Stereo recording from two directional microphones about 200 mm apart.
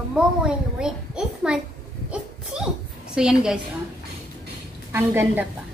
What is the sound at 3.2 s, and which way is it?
Speech, 5° right (ahead or behind).